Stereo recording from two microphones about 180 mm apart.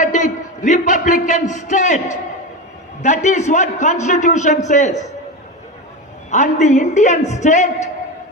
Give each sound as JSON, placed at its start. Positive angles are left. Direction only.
{"t": 0.0, "sound": "a sound", "side_deg": 45}
{"t": 3.0, "sound": "a man's voice", "side_deg": 40}
{"t": 6.3, "sound": "a man's voice", "side_deg": 40}